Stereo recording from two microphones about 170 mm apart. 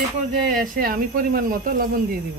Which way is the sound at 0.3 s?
50° right (ahead or behind).